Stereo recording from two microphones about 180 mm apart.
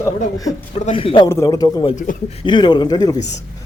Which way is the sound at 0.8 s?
30° left (ahead or behind).